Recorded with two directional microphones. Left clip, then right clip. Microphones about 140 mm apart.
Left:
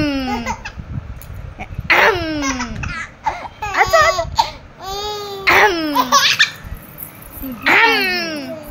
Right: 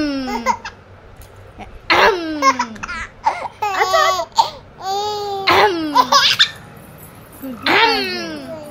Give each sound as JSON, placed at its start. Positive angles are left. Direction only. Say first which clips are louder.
{"t": 0.0, "sound": "laughter", "louder": "left 2 dB", "side_deg": -10}
{"t": 0.4, "sound": "laughter", "louder": "right 5 dB", "side_deg": -30}
{"t": 1.6, "sound": "baby cry", "louder": "even", "side_deg": 0}
{"t": 2.4, "sound": "laughter", "louder": "right 7 dB", "side_deg": -35}
{"t": 4.1, "sound": "a sound", "louder": "right 1 dB", "side_deg": -45}
{"t": 4.7, "sound": "a sound", "louder": "right 4 dB", "side_deg": -15}
{"t": 5.4, "sound": "laughter", "louder": "left 2 dB", "side_deg": 10}
{"t": 5.9, "sound": "laughter", "louder": "right 2 dB", "side_deg": -20}
{"t": 7.6, "sound": "babbling", "louder": "left 2 dB", "side_deg": 0}